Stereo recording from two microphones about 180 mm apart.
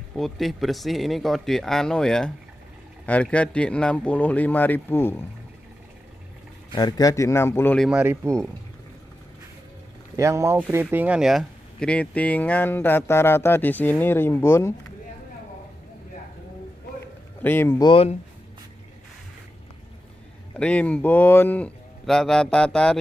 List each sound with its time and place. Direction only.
0.1 s speech: centre (ahead or behind)
6.7 s speech: 20° left (ahead or behind)
7.9 s speech: 10° right (ahead or behind)
10.1 s speech: 15° right (ahead or behind); by 14.7 s 15° left (ahead or behind)
17.4 s speech: 10° left (ahead or behind)
20.5 s speech: 5° left (ahead or behind)